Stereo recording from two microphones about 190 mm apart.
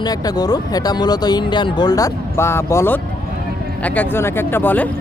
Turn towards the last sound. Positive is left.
turn(degrees=10)  # may be behind; listen again after turning